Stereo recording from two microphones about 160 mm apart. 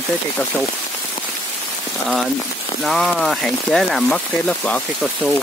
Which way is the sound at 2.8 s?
Centre (ahead or behind).